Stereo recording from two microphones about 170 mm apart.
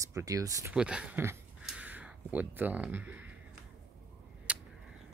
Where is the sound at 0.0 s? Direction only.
20° right (ahead or behind).